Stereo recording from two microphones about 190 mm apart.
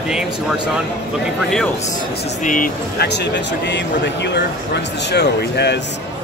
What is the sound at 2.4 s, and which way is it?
Speech, 45° left (ahead or behind).